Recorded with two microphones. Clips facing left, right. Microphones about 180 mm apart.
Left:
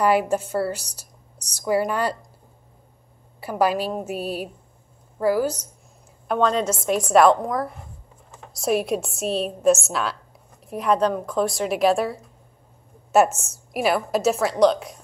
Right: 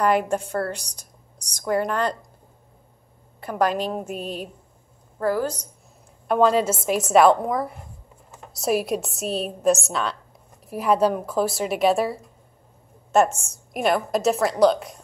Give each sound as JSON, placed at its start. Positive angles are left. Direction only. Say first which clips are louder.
{"t": 0.0, "sound": "a woman's voice", "louder": "left 1 dB", "side_deg": 5}
{"t": 3.3, "sound": "a woman's voice", "louder": "left 1 dB", "side_deg": 10}
{"t": 6.2, "sound": "a woman's voice", "louder": "right 2 dB", "side_deg": -5}